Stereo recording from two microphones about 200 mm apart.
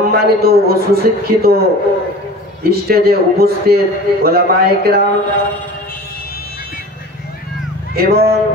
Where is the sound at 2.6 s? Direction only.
50° right (ahead or behind).